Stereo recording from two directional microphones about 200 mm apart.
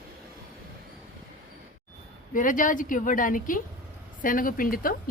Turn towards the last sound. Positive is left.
turn(degrees=45)  # may be behind; listen again after turning